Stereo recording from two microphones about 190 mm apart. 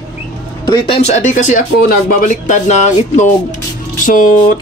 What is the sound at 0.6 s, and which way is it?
Speech, 25° left (ahead or behind).